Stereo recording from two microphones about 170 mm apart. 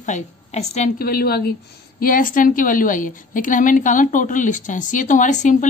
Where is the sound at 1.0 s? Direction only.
60° left (ahead or behind).